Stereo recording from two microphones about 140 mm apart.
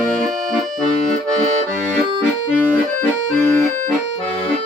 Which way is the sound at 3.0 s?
15° left (ahead or behind).